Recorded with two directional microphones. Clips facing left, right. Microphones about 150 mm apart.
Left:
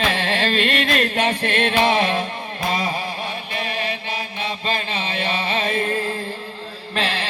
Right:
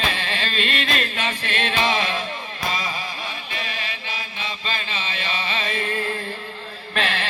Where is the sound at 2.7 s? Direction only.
60° left (ahead or behind).